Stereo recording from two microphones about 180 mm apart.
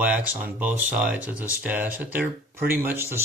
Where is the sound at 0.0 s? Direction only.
5° right (ahead or behind).